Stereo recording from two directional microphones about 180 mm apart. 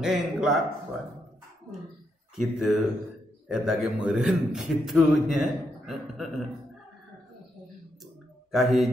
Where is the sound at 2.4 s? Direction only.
Centre (ahead or behind).